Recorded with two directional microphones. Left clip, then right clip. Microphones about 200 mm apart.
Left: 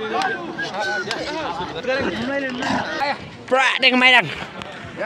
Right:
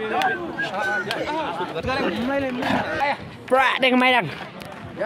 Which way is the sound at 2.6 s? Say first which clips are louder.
Even; 5° right (ahead or behind).